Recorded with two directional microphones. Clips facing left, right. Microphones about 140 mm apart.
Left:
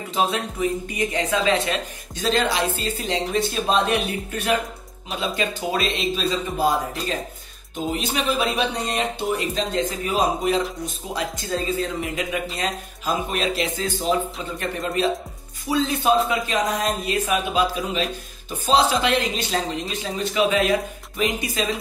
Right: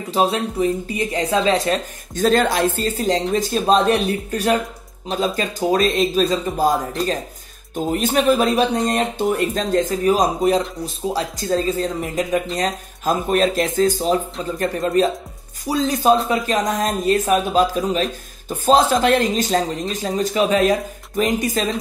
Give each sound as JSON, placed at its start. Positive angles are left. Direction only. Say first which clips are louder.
{"t": 0.1, "sound": "speech", "louder": "right 5 dB", "side_deg": -35}
{"t": 2.1, "sound": "speech", "louder": "right 5 dB", "side_deg": -50}
{"t": 7.7, "sound": "speech", "louder": "right 6 dB", "side_deg": -50}